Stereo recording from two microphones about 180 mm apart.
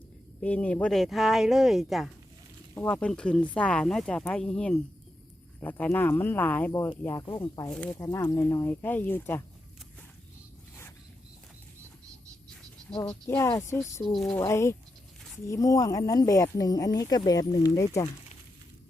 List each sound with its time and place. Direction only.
0.4 s speech: 5° left (ahead or behind)
13.2 s speech: 15° left (ahead or behind)
14.0 s speech: centre (ahead or behind)
14.4 s speech: 15° left (ahead or behind)